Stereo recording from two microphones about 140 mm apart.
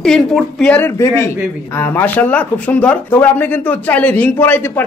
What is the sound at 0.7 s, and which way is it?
Speech, 20° left (ahead or behind).